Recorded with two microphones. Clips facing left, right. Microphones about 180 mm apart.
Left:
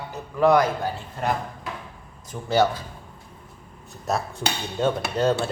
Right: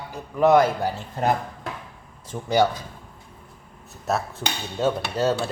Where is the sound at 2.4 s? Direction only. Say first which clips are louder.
Even; 15° right (ahead or behind).